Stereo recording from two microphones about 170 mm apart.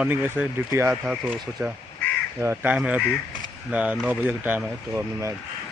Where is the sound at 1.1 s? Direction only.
5° right (ahead or behind).